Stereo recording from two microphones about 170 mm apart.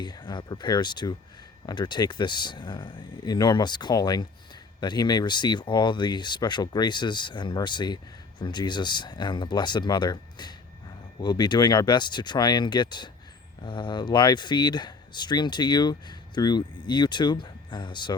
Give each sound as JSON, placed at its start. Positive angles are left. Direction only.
{"t": 0.0, "sound": "speech", "side_deg": 25}